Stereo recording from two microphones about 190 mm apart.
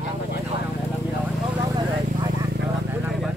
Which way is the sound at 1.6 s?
20° right (ahead or behind).